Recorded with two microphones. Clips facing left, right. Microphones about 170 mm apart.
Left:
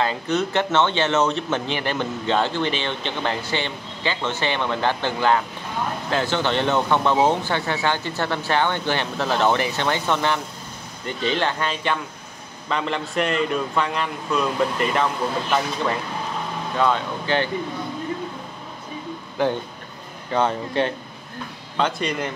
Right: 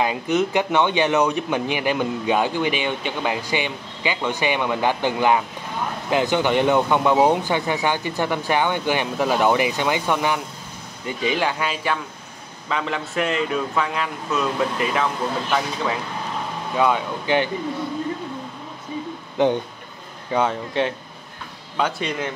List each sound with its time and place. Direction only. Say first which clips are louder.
0.0 s a man's voice: right 2 dB; 15° right (ahead or behind)
16.7 s a man's voice: right 1 dB; 10° right (ahead or behind)
19.3 s speech: right 3 dB; 20° right (ahead or behind)
20.3 s a man's voice: even; 5° right (ahead or behind)